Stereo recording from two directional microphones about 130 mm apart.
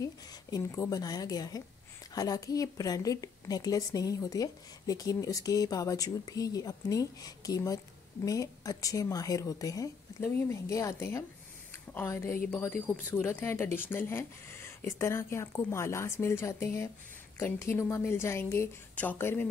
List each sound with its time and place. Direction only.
0.0 s speech: 25° left (ahead or behind)